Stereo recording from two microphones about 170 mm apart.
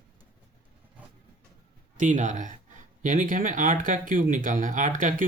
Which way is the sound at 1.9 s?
45° right (ahead or behind).